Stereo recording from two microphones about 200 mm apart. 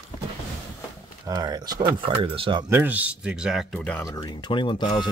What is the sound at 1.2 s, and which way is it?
Speech, 20° right (ahead or behind).